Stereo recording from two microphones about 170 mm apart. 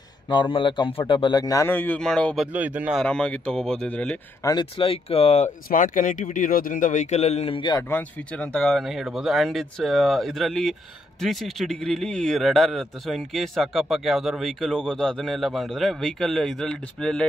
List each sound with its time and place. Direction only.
0.3 s a man's voice: 30° left (ahead or behind); by 3.0 s 10° right (ahead or behind)
3.0 s speech: 5° left (ahead or behind)
4.4 s speech: 25° left (ahead or behind)
5.7 s speech: 50° left (ahead or behind); by 7.8 s 30° left (ahead or behind)
7.9 s speech: 5° left (ahead or behind)